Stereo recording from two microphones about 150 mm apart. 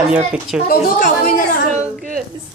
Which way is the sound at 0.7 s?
70° left (ahead or behind).